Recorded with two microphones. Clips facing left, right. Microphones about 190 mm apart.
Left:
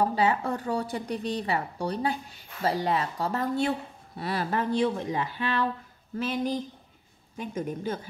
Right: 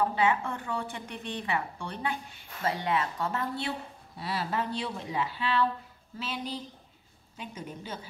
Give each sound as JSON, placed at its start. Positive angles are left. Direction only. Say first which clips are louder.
{"t": 0.0, "sound": "a woman's voice", "louder": "left 2 dB", "side_deg": 40}